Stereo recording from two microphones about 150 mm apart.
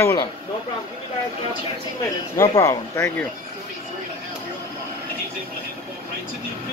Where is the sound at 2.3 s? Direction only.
25° left (ahead or behind).